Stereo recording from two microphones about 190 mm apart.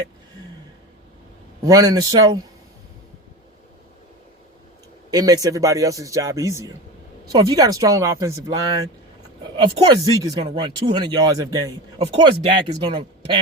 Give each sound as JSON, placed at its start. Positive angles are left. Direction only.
{"t": 1.6, "sound": "speech", "side_deg": -20}
{"t": 5.1, "sound": "speech", "side_deg": -20}